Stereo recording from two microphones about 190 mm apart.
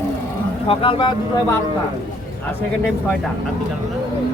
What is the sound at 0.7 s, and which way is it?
Speech, 25° left (ahead or behind).